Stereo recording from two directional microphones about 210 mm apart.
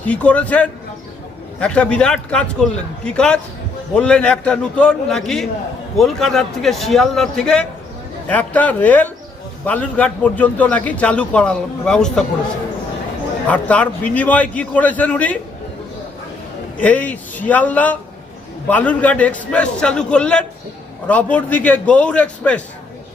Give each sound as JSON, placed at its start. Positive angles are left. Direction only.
{"t": 0.0, "sound": "a man's voice", "side_deg": 5}
{"t": 13.5, "sound": "a man's voice", "side_deg": 5}
{"t": 16.8, "sound": "a man's voice", "side_deg": 5}